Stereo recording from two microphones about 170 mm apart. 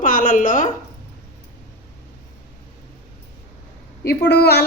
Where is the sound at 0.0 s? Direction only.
55° left (ahead or behind).